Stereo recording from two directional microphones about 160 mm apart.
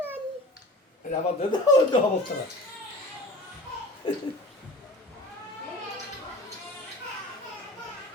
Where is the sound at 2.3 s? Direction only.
65° left (ahead or behind).